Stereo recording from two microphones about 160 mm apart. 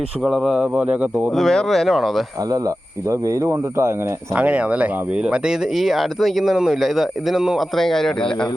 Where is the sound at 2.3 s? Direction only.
20° right (ahead or behind); by 8.2 s 5° left (ahead or behind).